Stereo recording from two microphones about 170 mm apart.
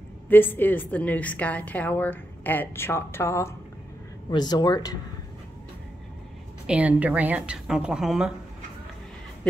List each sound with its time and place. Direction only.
0.3 s a woman's voice: 10° left (ahead or behind)
6.7 s a woman's voice: 10° right (ahead or behind)